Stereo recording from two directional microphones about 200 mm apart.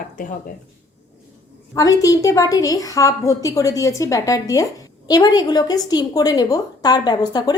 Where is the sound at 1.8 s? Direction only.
15° left (ahead or behind).